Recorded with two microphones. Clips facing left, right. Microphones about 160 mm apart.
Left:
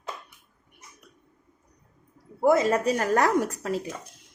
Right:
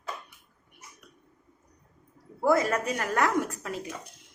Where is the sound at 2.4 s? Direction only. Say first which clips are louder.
Left 4 dB; 25° left (ahead or behind).